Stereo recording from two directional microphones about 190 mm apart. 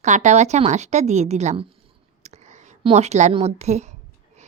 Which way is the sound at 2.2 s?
35° right (ahead or behind).